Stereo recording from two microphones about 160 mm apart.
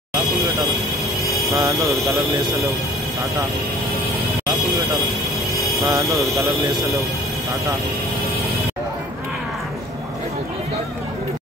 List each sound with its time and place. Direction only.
1.5 s speech: 20° right (ahead or behind)
5.9 s speech: 20° right (ahead or behind)